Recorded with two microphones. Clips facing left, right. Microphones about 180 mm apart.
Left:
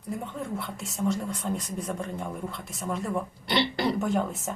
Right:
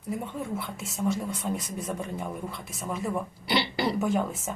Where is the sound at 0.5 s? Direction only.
Centre (ahead or behind).